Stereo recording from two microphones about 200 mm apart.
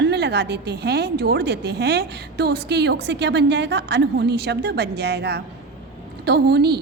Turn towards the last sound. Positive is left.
turn(degrees=-55)  # may be behind; listen again after turning